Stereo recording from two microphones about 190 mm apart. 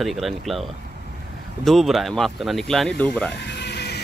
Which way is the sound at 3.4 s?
60° left (ahead or behind).